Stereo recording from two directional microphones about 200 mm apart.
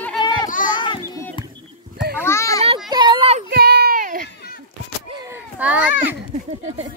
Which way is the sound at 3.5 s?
55° right (ahead or behind).